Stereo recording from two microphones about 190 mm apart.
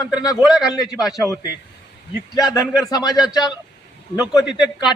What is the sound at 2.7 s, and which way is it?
Speech, centre (ahead or behind).